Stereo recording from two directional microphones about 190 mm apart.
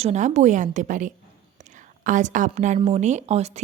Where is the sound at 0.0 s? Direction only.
35° right (ahead or behind).